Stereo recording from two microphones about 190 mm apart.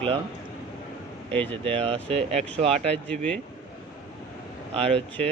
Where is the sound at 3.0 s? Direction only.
5° left (ahead or behind).